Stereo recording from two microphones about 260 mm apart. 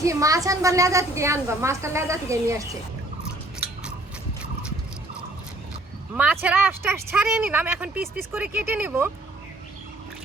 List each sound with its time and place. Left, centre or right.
0.0 s a woman's voice: centre
6.1 s a woman's voice: centre